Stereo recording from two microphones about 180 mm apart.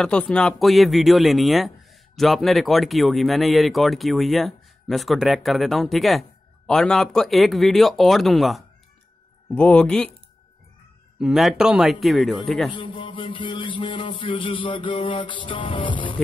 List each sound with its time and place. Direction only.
0.0 s speech: 5° left (ahead or behind)
11.1 s speech: 5° right (ahead or behind)
12.7 s a sound: 25° left (ahead or behind)